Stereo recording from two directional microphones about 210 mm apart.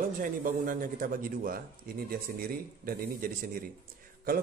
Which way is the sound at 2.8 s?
45° right (ahead or behind).